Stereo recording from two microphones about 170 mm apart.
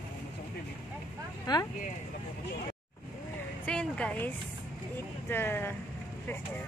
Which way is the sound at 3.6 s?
5° left (ahead or behind).